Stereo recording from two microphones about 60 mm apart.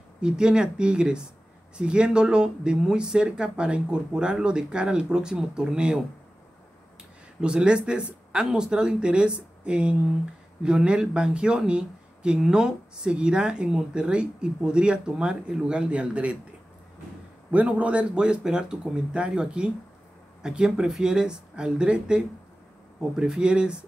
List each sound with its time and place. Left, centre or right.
0.2 s speech: centre
7.4 s speech: centre
17.5 s speech: right